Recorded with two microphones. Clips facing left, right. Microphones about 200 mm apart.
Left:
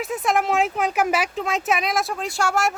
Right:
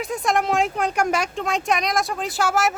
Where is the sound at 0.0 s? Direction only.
Centre (ahead or behind).